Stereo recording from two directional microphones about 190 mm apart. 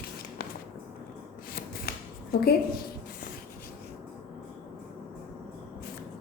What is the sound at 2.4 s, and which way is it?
Speech, 55° left (ahead or behind).